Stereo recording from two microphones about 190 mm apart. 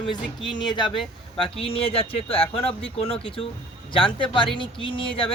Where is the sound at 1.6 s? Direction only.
30° left (ahead or behind).